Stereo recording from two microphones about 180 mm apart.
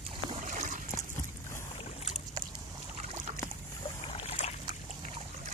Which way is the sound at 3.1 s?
40° right (ahead or behind).